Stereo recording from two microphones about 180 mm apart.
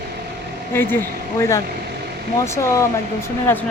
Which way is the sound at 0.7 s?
15° left (ahead or behind).